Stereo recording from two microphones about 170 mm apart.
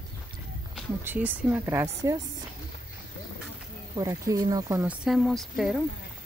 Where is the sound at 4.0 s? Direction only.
20° right (ahead or behind).